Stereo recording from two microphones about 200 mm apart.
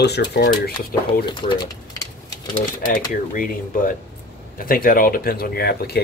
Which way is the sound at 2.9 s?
45° left (ahead or behind).